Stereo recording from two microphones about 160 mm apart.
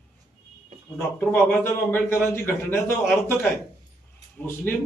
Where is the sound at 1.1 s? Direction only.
15° left (ahead or behind).